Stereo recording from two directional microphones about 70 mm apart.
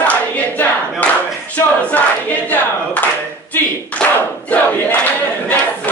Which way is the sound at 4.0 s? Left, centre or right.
Centre.